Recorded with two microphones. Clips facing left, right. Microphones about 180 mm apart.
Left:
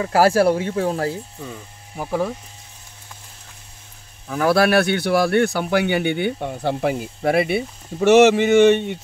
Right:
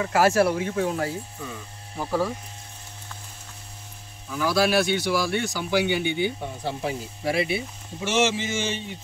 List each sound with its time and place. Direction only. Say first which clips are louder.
0.0 s speech: left 4 dB; 35° left (ahead or behind)
2.0 s speech: left 2 dB; 15° left (ahead or behind)
4.3 s speech: left 6 dB; 60° left (ahead or behind)